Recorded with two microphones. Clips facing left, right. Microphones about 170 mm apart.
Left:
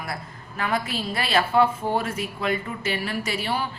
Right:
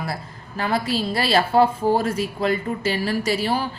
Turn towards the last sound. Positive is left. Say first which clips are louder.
# right 5 dB
turn(degrees=-35)  # may be behind; listen again after turning